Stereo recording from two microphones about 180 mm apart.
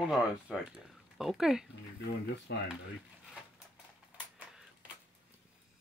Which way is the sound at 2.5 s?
70° left (ahead or behind).